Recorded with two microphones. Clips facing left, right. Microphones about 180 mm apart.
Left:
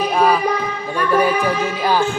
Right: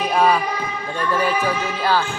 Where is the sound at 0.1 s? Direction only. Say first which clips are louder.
Even; centre (ahead or behind).